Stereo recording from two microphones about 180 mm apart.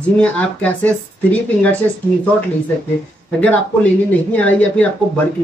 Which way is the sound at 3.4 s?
10° left (ahead or behind).